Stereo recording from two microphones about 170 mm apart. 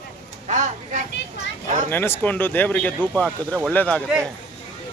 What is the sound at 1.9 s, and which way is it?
Speech, 10° left (ahead or behind).